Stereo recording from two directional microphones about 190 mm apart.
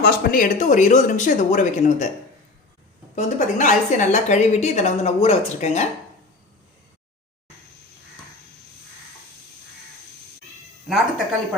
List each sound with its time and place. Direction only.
0.0 s a woman's voice: 55° left (ahead or behind); by 2.0 s 40° left (ahead or behind)
3.2 s a woman's voice: 40° left (ahead or behind)
10.8 s a woman's voice: centre (ahead or behind)